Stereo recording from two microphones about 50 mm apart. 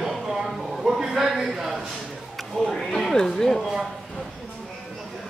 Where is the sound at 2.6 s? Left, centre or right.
Centre.